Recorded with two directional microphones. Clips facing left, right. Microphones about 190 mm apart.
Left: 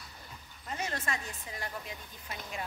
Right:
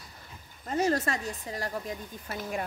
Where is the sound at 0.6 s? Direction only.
40° right (ahead or behind).